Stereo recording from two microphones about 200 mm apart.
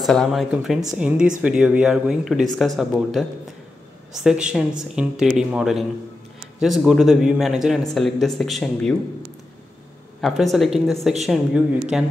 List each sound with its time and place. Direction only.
0.0 s speech: centre (ahead or behind)
10.2 s speech: centre (ahead or behind)